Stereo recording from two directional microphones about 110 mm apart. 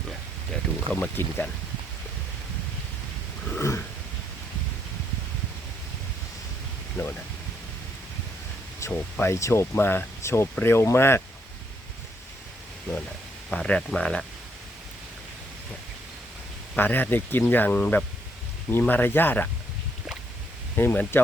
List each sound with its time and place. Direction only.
0.9 s speech: 20° left (ahead or behind)
3.6 s speech: 25° left (ahead or behind)
7.0 s speech: 25° left (ahead or behind)
8.8 s speech: 25° left (ahead or behind)
13.5 s speech: 10° left (ahead or behind)
16.7 s speech: 15° left (ahead or behind)
20.7 s speech: 15° left (ahead or behind)